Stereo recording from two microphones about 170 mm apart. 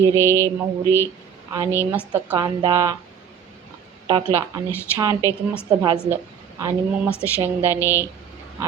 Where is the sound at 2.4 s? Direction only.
25° right (ahead or behind).